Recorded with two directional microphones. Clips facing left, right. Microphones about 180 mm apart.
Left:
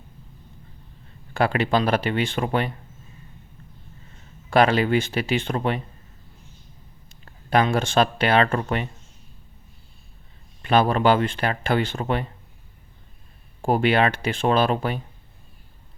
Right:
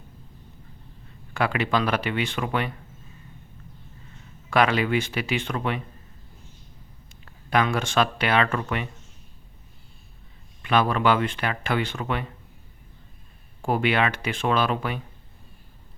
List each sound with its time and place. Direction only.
1.3 s speech: 35° left (ahead or behind)
4.4 s speech: 30° left (ahead or behind)
7.3 s speech: 30° left (ahead or behind)
10.6 s speech: 35° left (ahead or behind)
13.6 s speech: 35° left (ahead or behind)